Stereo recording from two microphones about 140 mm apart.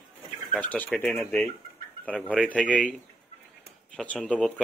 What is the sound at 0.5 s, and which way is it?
Speech, 10° left (ahead or behind).